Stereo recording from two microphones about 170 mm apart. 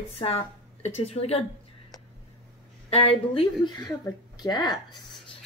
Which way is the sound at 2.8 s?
35° left (ahead or behind).